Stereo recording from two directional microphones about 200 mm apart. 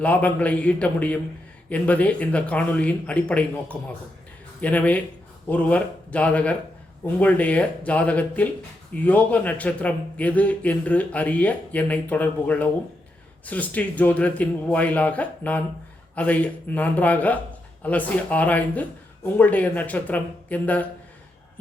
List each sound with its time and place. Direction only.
0.0 s speech: 5° left (ahead or behind)